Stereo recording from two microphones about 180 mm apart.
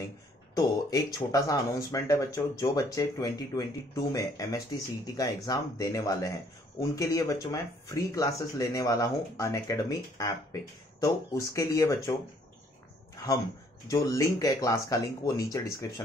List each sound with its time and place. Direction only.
0.6 s speech: 20° left (ahead or behind)
13.8 s speech: 20° left (ahead or behind)